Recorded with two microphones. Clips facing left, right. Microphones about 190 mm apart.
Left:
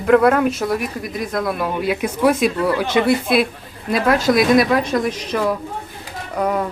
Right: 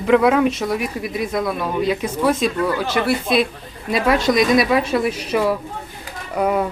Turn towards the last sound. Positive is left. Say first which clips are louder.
# right 1 dB
turn(degrees=-10)  # may be behind; listen again after turning